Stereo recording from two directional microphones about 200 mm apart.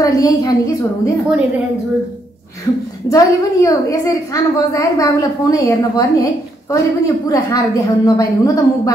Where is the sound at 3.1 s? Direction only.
15° left (ahead or behind).